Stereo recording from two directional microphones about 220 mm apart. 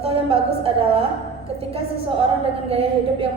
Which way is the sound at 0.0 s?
25° right (ahead or behind).